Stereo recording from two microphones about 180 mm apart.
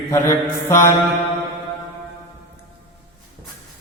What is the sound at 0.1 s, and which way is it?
Mantra, 15° left (ahead or behind).